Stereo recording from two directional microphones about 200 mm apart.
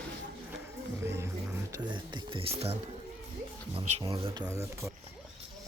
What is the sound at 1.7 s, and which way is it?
Speech, 25° right (ahead or behind).